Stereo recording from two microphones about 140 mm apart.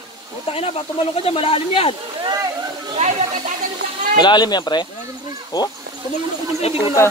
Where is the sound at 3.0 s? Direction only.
50° right (ahead or behind).